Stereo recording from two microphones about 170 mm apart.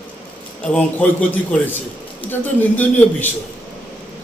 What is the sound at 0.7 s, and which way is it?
A man's voice, 10° left (ahead or behind).